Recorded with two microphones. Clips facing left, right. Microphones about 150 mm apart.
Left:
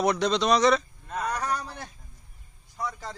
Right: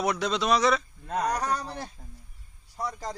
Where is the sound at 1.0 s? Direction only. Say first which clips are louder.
Right 2 dB; 40° right (ahead or behind).